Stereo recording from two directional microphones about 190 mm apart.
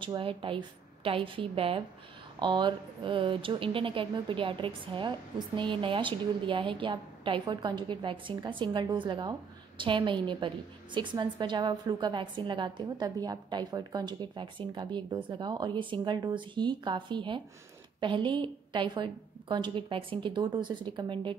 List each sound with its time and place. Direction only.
0.0 s a woman's voice: 25° right (ahead or behind)